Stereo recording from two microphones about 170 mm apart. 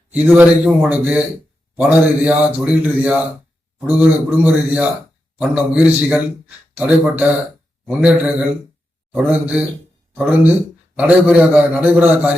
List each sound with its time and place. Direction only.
0.1 s speech: 10° right (ahead or behind)
10.9 s speech: 10° right (ahead or behind)